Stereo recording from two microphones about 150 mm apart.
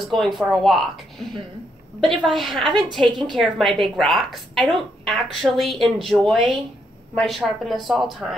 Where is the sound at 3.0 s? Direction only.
30° right (ahead or behind).